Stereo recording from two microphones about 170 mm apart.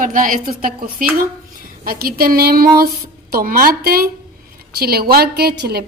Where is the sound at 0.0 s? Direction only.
50° right (ahead or behind).